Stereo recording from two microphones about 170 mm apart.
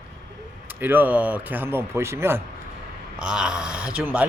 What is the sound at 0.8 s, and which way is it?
Speech, 10° right (ahead or behind).